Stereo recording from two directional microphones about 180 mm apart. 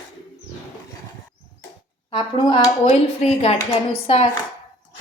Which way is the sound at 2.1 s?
25° left (ahead or behind).